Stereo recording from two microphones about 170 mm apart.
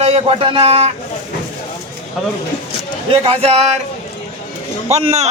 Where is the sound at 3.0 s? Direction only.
35° right (ahead or behind).